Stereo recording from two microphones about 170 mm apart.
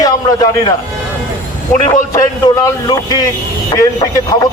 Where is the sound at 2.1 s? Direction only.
25° left (ahead or behind).